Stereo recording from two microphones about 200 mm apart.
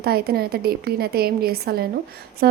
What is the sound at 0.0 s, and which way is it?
A woman's voice, 50° right (ahead or behind).